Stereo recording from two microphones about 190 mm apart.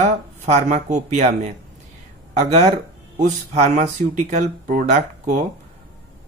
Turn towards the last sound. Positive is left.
turn(degrees=-40)  # may be behind; listen again after turning